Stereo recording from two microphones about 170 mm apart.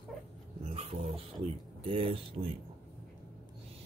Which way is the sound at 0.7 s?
35° right (ahead or behind).